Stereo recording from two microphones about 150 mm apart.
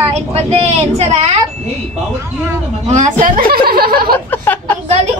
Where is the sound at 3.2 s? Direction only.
70° right (ahead or behind); by 4.1 s 85° right.